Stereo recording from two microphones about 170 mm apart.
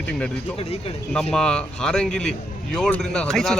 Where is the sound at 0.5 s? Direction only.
35° left (ahead or behind).